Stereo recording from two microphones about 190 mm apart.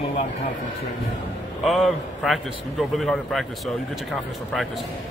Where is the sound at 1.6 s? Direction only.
Centre (ahead or behind).